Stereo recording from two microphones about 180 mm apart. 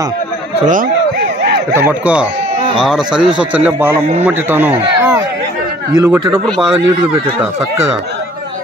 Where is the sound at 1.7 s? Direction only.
10° right (ahead or behind).